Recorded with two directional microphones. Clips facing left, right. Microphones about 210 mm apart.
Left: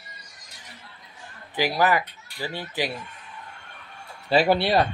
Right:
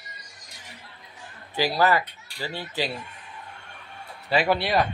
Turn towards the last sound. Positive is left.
turn(degrees=30)  # may be behind; listen again after turning